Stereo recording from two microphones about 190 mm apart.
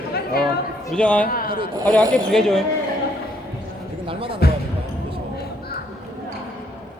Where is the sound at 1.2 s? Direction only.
50° left (ahead or behind).